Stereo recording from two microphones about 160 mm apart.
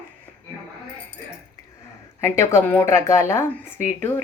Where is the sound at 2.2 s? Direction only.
15° left (ahead or behind).